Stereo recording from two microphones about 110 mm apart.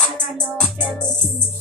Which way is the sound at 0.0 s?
5° left (ahead or behind).